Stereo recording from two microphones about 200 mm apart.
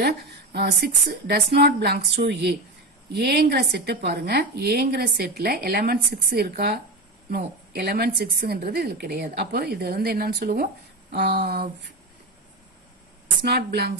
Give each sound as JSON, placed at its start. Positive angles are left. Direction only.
{"t": 0.0, "sound": "a woman's voice", "side_deg": -55}
{"t": 13.4, "sound": "speech", "side_deg": -55}